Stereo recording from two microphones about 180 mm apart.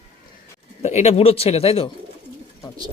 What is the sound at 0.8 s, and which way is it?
Speech, 35° left (ahead or behind).